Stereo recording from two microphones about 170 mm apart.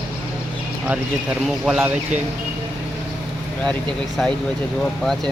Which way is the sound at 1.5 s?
Centre (ahead or behind).